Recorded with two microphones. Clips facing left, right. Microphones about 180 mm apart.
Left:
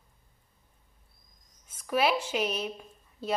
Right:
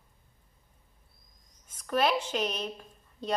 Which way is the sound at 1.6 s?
10° left (ahead or behind).